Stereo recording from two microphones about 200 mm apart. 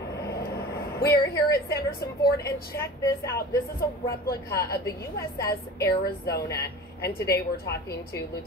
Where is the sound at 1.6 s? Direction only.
50° left (ahead or behind).